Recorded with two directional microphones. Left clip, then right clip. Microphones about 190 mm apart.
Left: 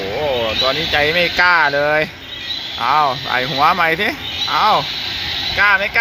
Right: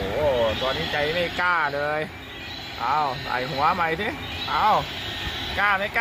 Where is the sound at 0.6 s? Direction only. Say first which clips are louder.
Left 9 dB; 70° left (ahead or behind).